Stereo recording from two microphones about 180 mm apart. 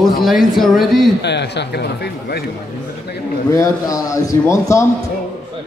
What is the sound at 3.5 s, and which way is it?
A man's voice, 20° left (ahead or behind).